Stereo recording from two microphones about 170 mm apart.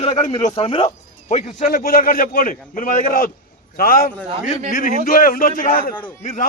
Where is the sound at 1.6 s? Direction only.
55° left (ahead or behind).